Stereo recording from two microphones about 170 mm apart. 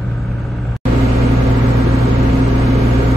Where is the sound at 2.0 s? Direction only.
20° right (ahead or behind).